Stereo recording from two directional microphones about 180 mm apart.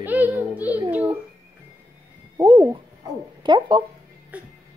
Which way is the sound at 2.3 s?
25° right (ahead or behind).